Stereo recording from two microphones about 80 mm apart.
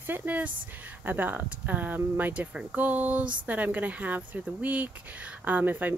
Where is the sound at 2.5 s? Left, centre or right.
Centre.